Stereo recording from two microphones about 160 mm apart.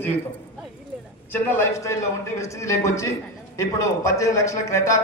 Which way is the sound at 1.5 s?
15° left (ahead or behind).